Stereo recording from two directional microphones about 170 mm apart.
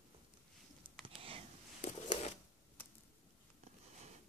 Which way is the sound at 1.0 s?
30° right (ahead or behind).